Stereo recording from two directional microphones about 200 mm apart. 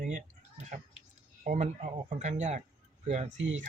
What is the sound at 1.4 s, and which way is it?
Speech, 35° right (ahead or behind).